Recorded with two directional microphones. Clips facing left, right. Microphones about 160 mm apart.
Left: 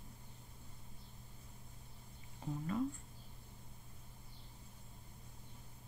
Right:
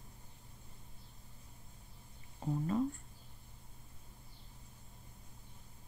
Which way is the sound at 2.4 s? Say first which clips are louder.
Right 6 dB; 35° right (ahead or behind).